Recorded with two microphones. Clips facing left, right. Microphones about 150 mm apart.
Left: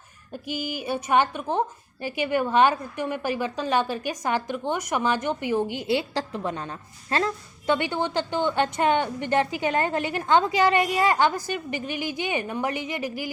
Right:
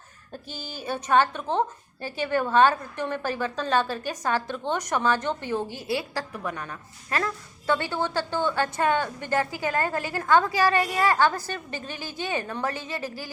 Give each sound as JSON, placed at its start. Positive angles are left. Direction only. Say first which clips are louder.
{"t": 0.4, "sound": "a woman's voice", "louder": "left 5 dB", "side_deg": 15}